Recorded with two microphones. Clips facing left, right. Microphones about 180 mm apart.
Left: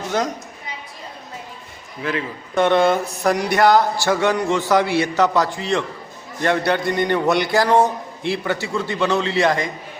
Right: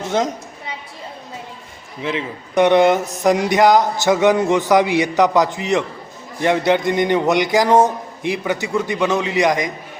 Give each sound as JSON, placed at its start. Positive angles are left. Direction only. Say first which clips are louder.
{"t": 2.0, "sound": "speech", "louder": "right 1 dB", "side_deg": -20}